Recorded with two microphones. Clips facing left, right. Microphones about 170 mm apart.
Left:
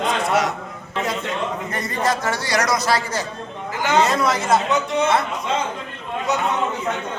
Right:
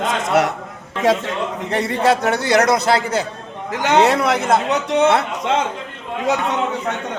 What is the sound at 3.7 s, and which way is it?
Speech, 70° right (ahead or behind).